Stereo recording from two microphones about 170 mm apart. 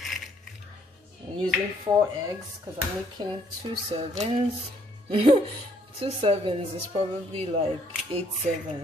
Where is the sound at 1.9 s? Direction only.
30° right (ahead or behind).